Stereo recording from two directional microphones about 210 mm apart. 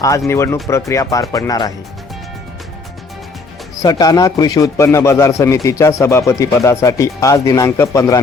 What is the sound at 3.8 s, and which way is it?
Speech, 15° left (ahead or behind).